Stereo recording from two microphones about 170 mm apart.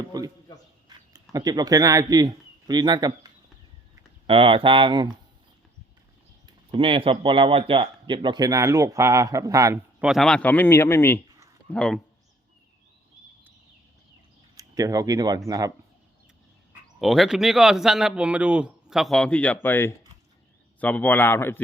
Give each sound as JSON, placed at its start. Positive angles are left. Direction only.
{"t": 0.1, "sound": "a man's voice", "side_deg": -20}
{"t": 4.3, "sound": "speech", "side_deg": -30}
{"t": 6.4, "sound": "speech", "side_deg": -30}
{"t": 10.0, "sound": "a man's voice", "side_deg": 0}
{"t": 14.5, "sound": "speech", "side_deg": -20}
{"t": 17.0, "sound": "a man's voice", "side_deg": 0}